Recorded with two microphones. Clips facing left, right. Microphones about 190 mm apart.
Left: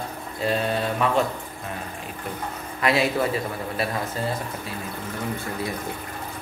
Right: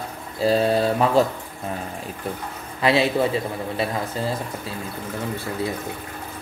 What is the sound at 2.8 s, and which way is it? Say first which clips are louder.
Speech: right 3 dB; 30° right (ahead or behind).